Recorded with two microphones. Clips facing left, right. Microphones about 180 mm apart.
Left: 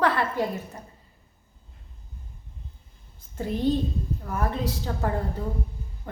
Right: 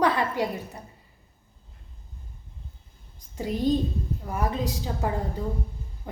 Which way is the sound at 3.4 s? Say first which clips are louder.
Even; 15° right (ahead or behind).